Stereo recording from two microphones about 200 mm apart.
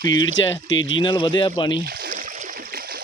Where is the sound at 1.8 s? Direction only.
50° right (ahead or behind).